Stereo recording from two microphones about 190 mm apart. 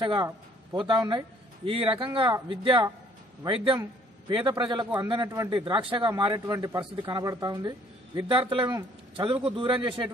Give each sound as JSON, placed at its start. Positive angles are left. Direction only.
{"t": 0.0, "sound": "a man's voice", "side_deg": -25}
{"t": 4.3, "sound": "a man's voice", "side_deg": -25}